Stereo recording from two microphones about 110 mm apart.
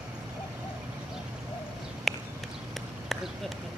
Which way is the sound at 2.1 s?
Centre (ahead or behind).